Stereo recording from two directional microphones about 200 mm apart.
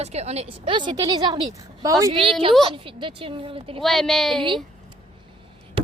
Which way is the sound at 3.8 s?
Centre (ahead or behind).